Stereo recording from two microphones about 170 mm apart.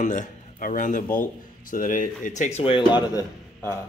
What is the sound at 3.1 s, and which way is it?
Speech, 20° left (ahead or behind).